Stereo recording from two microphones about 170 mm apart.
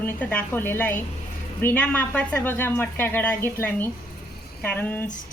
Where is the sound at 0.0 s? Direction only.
10° left (ahead or behind).